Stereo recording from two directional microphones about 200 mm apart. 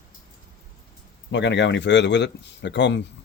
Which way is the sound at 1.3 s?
60° left (ahead or behind).